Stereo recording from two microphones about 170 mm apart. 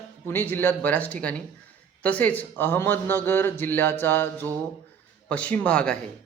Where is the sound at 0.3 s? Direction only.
15° left (ahead or behind).